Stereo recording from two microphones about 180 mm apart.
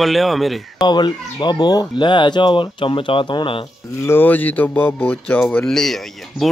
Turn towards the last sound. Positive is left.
turn(degrees=0)  # may be behind; listen again after turning